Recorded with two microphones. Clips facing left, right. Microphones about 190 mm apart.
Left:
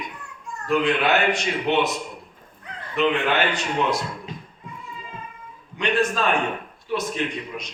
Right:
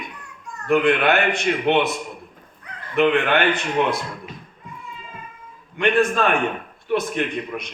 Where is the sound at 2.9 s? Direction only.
55° right (ahead or behind).